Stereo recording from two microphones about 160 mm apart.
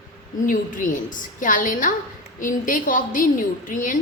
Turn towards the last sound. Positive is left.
turn(degrees=55)  # may be behind; listen again after turning